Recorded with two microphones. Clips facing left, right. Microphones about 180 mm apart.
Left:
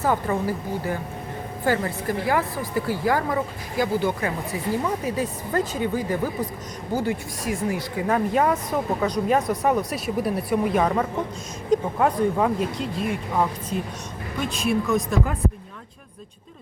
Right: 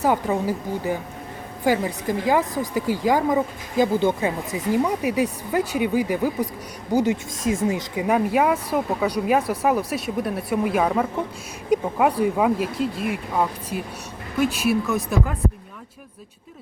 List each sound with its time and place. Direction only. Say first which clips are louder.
0.0 s speech: right 2 dB; 15° right (ahead or behind)